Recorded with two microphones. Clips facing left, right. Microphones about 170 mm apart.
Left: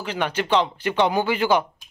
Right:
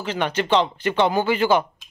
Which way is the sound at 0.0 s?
10° left (ahead or behind).